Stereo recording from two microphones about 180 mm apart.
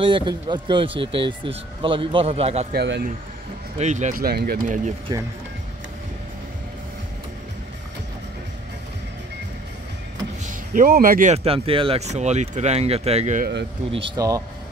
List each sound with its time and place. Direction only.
0.0 s speech: 25° right (ahead or behind)
2.7 s speech: 65° right (ahead or behind)
3.7 s speech: 40° right (ahead or behind); by 4.7 s 60° right (ahead or behind)
5.1 s speech: 20° right (ahead or behind)
10.7 s speech: 50° right (ahead or behind)
13.9 s speech: 25° right (ahead or behind)